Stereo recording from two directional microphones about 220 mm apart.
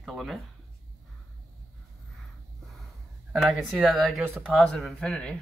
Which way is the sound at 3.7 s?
5° right (ahead or behind).